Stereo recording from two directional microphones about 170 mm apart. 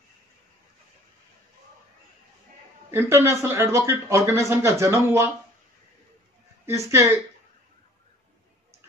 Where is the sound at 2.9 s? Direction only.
15° right (ahead or behind).